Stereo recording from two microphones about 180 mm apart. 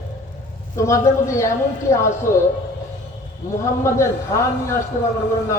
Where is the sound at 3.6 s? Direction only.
15° left (ahead or behind).